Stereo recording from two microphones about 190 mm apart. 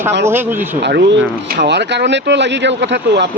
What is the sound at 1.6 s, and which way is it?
Speech, 65° right (ahead or behind).